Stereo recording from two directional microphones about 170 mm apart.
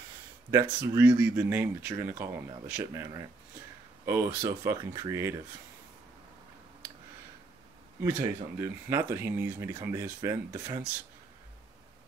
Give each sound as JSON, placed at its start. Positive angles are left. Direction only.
{"t": 0.5, "sound": "speech", "side_deg": -20}
{"t": 4.5, "sound": "speech", "side_deg": -20}
{"t": 8.0, "sound": "speech", "side_deg": -15}